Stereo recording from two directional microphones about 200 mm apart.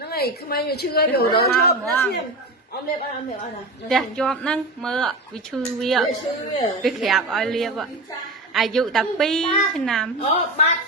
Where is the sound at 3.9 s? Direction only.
5° left (ahead or behind).